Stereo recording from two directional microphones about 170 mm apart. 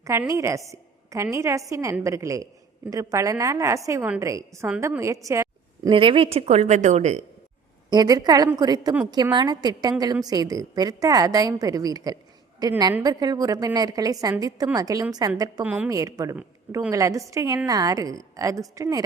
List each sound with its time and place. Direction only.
0.0 s a woman's voice: 15° right (ahead or behind)
5.9 s a woman's voice: 30° right (ahead or behind)
7.9 s a woman's voice: 25° right (ahead or behind)
15.6 s a woman's voice: 10° right (ahead or behind)